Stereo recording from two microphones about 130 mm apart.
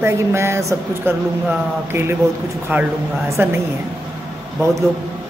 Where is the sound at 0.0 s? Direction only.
20° right (ahead or behind).